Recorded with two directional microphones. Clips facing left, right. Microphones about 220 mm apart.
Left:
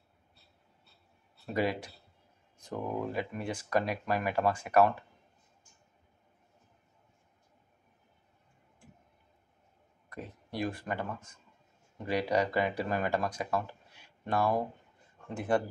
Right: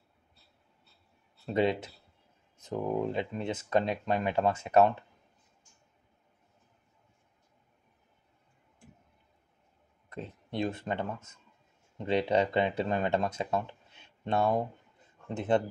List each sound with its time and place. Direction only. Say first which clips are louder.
1.4 s speech: right 4 dB; 25° right (ahead or behind)
10.0 s speech: right 2 dB; 25° right (ahead or behind)